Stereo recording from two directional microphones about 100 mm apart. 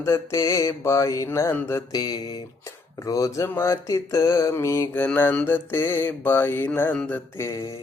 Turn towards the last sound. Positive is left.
turn(degrees=30)  # may be behind; listen again after turning